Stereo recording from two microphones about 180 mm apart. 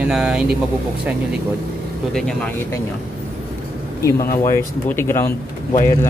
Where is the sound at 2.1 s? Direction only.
5° left (ahead or behind).